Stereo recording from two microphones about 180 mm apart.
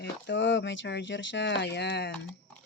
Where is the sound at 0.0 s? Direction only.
75° left (ahead or behind).